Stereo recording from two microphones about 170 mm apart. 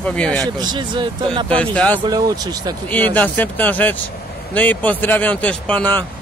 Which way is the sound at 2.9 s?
10° left (ahead or behind).